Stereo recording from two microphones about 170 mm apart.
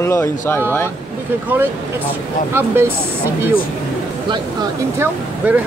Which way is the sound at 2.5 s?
15° right (ahead or behind).